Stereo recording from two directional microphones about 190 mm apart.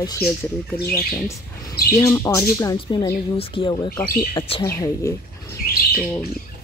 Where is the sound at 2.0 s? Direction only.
15° left (ahead or behind).